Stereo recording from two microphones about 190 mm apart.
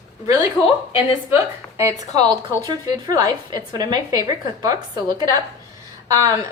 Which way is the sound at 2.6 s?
20° right (ahead or behind).